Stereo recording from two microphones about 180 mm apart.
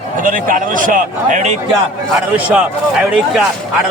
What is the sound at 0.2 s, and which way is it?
A man's voice, 50° right (ahead or behind).